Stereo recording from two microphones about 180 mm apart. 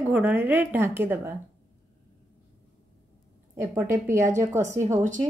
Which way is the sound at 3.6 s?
15° right (ahead or behind).